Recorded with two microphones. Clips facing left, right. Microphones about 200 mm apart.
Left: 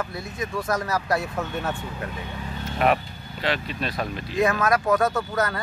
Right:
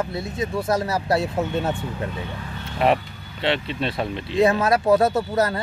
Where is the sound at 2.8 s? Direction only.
25° right (ahead or behind).